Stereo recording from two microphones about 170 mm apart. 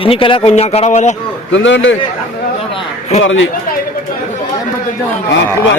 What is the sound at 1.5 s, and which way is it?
Speech, 90° left.